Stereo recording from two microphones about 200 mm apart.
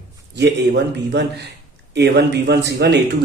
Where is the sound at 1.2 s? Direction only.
60° right (ahead or behind).